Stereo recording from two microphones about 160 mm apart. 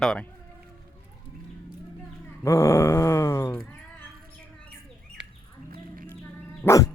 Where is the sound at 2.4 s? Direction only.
15° left (ahead or behind).